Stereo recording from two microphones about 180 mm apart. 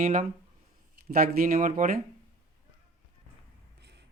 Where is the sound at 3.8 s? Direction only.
70° right (ahead or behind).